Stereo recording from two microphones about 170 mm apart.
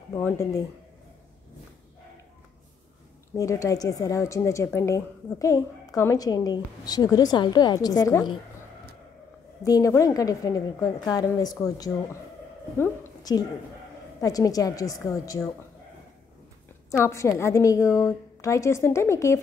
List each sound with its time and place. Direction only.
0.1 s a woman's voice: 20° left (ahead or behind)
3.3 s a woman's voice: 20° left (ahead or behind)
9.6 s a woman's voice: 20° left (ahead or behind)
17.0 s a woman's voice: 15° left (ahead or behind)